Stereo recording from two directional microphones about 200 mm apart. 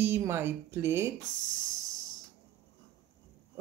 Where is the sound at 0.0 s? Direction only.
10° right (ahead or behind).